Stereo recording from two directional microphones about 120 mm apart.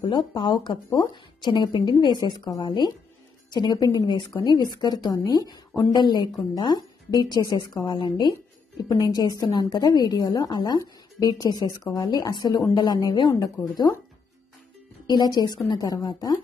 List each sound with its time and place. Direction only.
0.0 s a woman's voice: 45° left (ahead or behind)
15.0 s a woman's voice: 35° left (ahead or behind)